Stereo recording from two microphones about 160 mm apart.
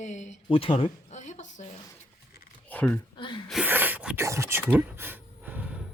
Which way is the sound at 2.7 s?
10° left (ahead or behind).